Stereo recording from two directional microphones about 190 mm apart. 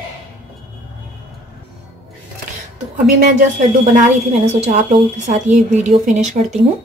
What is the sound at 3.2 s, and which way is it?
A woman's voice, 45° right (ahead or behind).